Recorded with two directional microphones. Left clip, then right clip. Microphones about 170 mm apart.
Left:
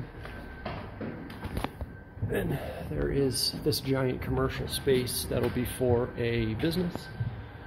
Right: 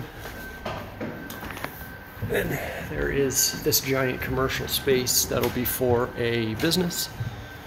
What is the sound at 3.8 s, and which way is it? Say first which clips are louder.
Speech: right 5 dB; 10° left (ahead or behind).